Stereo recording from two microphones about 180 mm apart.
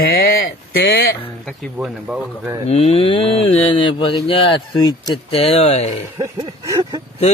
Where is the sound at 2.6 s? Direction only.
35° left (ahead or behind).